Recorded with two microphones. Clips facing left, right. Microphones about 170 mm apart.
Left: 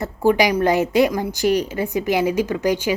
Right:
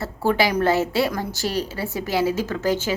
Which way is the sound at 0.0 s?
15° left (ahead or behind).